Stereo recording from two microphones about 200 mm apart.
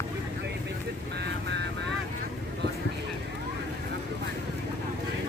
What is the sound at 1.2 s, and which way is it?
Vehicle, 60° right (ahead or behind).